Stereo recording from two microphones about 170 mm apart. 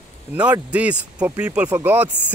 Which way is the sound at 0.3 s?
10° right (ahead or behind).